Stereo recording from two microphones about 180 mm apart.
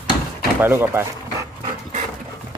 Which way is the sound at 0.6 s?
15° right (ahead or behind).